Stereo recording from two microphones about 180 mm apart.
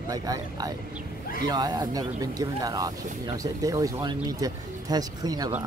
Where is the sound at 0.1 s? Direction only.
20° right (ahead or behind).